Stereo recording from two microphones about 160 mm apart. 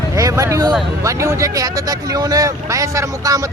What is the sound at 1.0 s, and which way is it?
Speech, 20° right (ahead or behind).